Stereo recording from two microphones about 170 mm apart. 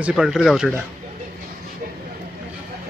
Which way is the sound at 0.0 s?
Centre (ahead or behind).